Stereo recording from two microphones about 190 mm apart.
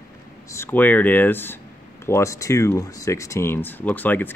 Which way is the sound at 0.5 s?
10° left (ahead or behind).